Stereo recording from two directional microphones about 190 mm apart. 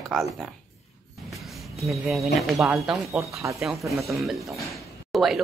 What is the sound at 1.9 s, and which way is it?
A man's voice, centre (ahead or behind).